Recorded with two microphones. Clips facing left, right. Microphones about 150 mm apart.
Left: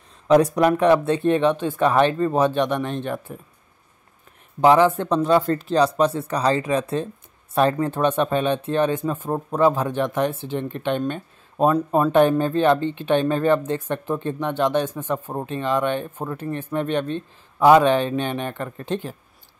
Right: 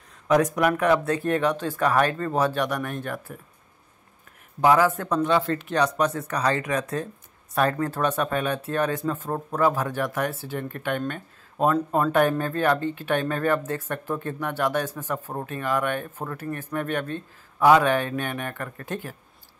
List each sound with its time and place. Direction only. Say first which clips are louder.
0.3 s speech: left 5 dB; 30° left (ahead or behind)
4.6 s speech: left 4 dB; 25° left (ahead or behind)
5.3 s speech: left 7 dB; 40° left (ahead or behind); by 19.1 s 25° left (ahead or behind)